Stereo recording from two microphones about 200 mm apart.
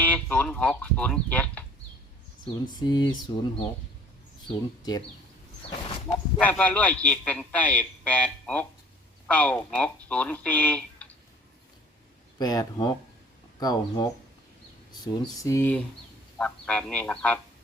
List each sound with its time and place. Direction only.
0.0 s speech: 5° left (ahead or behind)
2.7 s speech: 20° left (ahead or behind)
6.4 s a man's voice: 5° left (ahead or behind)
12.4 s a man's voice: 20° left (ahead or behind)